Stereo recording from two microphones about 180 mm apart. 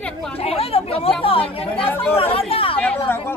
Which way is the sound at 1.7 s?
10° left (ahead or behind).